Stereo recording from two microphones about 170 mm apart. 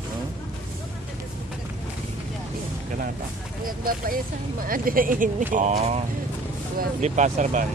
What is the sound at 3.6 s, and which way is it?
Speech, 55° right (ahead or behind).